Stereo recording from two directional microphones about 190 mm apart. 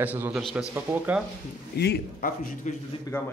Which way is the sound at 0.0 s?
10° right (ahead or behind).